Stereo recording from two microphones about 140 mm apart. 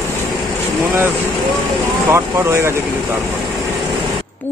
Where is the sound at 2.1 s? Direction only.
20° right (ahead or behind).